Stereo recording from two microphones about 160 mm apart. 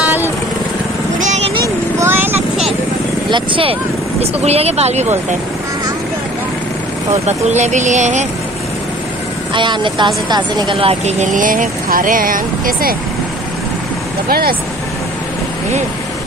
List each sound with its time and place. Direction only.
2.0 s vehicle: 15° right (ahead or behind)
3.3 s speech: 30° right (ahead or behind)
7.2 s speech: 45° right (ahead or behind)
9.5 s speech: 30° right (ahead or behind); by 12.9 s 60° right (ahead or behind)